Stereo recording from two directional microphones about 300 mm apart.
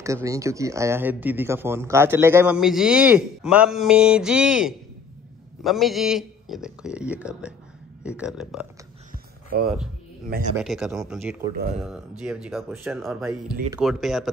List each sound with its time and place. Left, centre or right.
0.0 s speech: centre
10.5 s speech: centre